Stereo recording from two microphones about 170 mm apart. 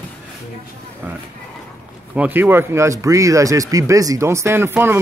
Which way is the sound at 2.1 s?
10° right (ahead or behind).